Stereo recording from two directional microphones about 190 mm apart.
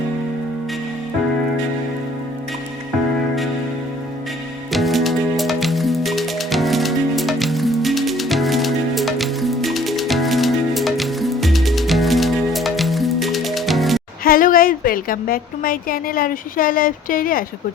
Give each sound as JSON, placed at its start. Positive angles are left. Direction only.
{"t": 4.7, "sound": "music", "side_deg": 0}
{"t": 14.3, "sound": "speech", "side_deg": 50}